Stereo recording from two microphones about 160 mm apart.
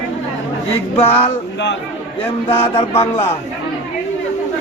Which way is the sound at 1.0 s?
15° left (ahead or behind).